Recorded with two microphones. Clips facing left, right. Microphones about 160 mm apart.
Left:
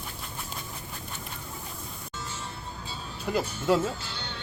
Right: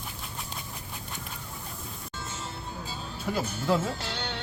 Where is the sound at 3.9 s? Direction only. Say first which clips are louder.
Right 4 dB; 80° right.